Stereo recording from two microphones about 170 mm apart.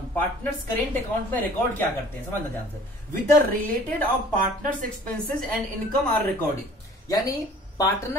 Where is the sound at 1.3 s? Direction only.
10° left (ahead or behind).